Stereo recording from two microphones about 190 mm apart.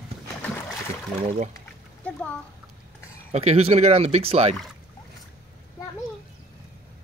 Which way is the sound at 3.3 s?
35° right (ahead or behind).